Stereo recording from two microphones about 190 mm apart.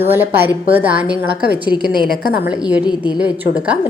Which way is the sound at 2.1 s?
50° left (ahead or behind).